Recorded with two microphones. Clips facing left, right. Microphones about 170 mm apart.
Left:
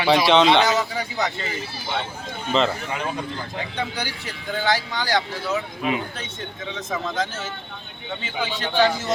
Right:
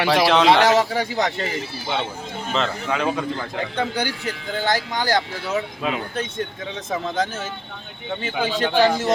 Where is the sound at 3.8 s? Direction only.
55° right (ahead or behind).